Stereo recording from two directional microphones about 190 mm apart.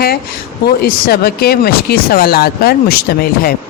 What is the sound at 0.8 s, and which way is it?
Speech, 55° left (ahead or behind).